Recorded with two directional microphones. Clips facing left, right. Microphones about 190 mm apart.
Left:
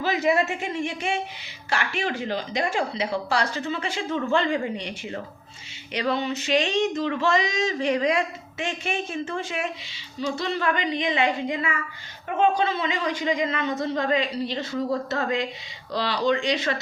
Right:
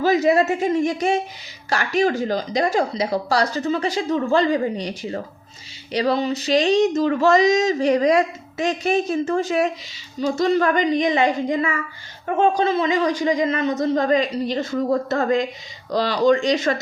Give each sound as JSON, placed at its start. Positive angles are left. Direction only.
{"t": 0.0, "sound": "a man's voice", "side_deg": -40}